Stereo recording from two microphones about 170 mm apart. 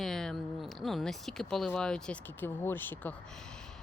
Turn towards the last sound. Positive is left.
turn(degrees=10)  # may be behind; listen again after turning